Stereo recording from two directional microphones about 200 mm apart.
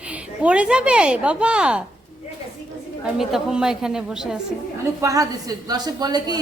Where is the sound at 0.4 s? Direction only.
5° right (ahead or behind).